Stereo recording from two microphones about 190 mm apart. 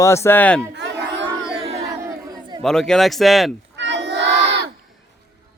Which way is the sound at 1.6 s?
35° right (ahead or behind).